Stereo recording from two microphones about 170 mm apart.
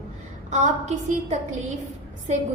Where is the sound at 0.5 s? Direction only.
45° right (ahead or behind).